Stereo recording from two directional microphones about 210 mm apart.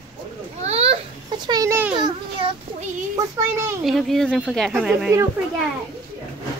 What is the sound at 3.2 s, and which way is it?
Speech, 15° right (ahead or behind).